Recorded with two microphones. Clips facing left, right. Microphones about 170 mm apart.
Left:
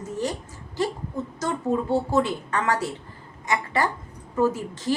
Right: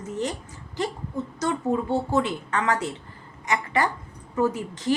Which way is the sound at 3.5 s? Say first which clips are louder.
Even; 20° right (ahead or behind).